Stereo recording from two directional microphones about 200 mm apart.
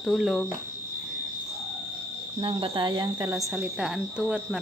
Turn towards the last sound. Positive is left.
turn(degrees=-5)  # may be behind; listen again after turning